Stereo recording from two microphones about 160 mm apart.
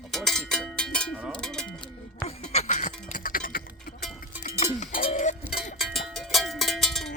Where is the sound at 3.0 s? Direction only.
60° left (ahead or behind).